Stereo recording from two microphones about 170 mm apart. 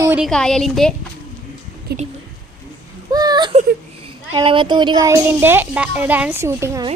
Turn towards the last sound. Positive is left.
turn(degrees=-15)  # may be behind; listen again after turning